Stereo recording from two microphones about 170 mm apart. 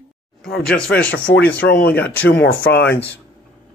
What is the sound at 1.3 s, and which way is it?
Speech, 70° left (ahead or behind).